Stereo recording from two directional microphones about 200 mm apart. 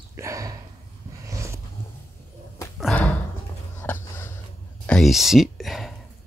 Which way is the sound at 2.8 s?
5° left (ahead or behind).